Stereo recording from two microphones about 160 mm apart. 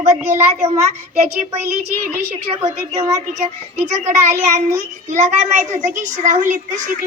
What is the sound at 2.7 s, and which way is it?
Speech, 20° right (ahead or behind).